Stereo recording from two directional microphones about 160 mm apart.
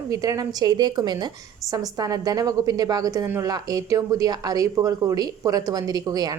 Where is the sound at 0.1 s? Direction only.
20° right (ahead or behind).